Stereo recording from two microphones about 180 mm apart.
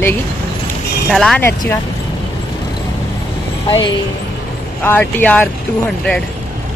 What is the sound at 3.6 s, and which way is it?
Speech, 25° left (ahead or behind).